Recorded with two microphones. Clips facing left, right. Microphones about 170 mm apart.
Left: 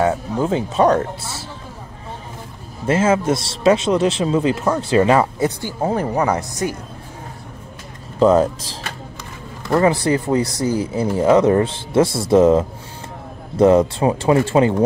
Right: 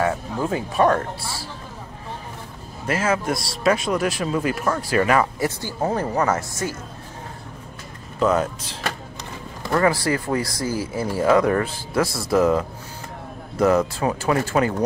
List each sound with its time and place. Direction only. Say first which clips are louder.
0.0 s speech: left 4 dB; 20° left (ahead or behind)
2.9 s speech: left 6 dB; 25° left (ahead or behind)
5.6 s speech: left 3 dB; 15° left (ahead or behind)
8.2 s speech: left 7 dB; 30° left (ahead or behind)
9.7 s speech: left 4 dB; 20° left (ahead or behind)